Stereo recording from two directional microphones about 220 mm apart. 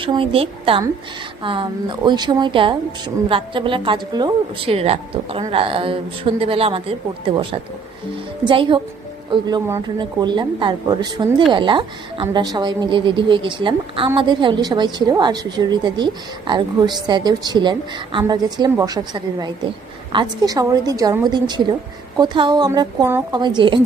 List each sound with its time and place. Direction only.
0.0 s a woman's voice: 25° right (ahead or behind)